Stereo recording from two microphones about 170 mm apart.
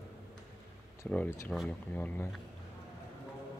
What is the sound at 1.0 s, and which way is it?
A man's voice, 10° left (ahead or behind).